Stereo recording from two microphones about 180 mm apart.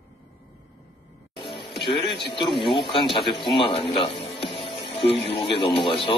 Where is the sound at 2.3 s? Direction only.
25° left (ahead or behind).